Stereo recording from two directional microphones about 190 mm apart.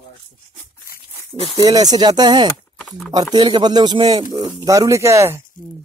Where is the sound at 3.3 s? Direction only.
20° right (ahead or behind).